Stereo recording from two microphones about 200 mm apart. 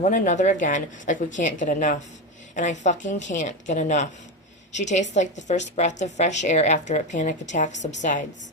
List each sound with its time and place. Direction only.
0.0 s a woman's voice: 35° left (ahead or behind)